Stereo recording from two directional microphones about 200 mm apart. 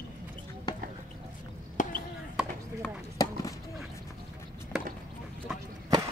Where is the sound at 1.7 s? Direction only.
40° left (ahead or behind).